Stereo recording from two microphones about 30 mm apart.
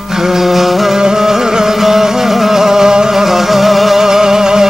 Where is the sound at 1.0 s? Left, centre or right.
Centre.